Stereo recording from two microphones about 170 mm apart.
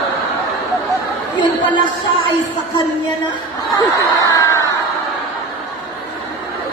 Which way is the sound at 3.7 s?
20° left (ahead or behind).